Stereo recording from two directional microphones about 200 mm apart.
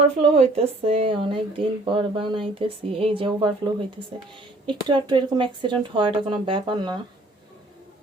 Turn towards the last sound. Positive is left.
turn(degrees=-25)  # may be behind; listen again after turning